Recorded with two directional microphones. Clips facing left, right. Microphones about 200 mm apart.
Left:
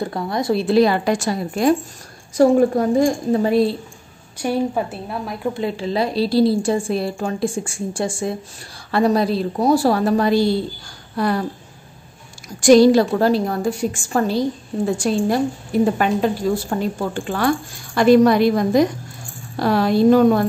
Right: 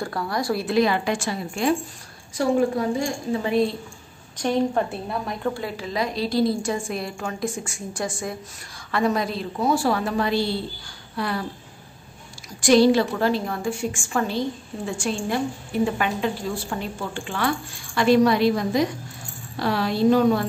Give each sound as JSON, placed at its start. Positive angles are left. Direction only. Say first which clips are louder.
{"t": 0.0, "sound": "a woman's voice", "louder": "left 4 dB", "side_deg": 20}
{"t": 4.4, "sound": "a woman's voice", "louder": "left 1 dB", "side_deg": 10}
{"t": 5.5, "sound": "a woman's voice", "louder": "left 10 dB", "side_deg": 25}
{"t": 12.5, "sound": "a woman's voice", "louder": "left 5 dB", "side_deg": 45}